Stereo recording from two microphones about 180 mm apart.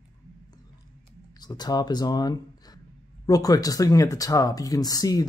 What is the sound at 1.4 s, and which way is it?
Speech, 20° left (ahead or behind).